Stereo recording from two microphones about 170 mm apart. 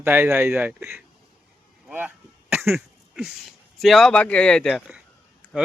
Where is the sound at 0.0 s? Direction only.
15° right (ahead or behind).